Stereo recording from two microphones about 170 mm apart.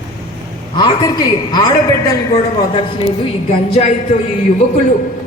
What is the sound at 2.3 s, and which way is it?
Speech, 35° left (ahead or behind).